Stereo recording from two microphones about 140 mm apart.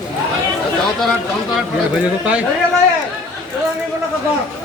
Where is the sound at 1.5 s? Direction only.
10° right (ahead or behind).